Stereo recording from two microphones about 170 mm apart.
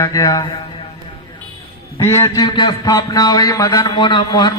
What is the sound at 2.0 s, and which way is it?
A man's voice, 15° left (ahead or behind).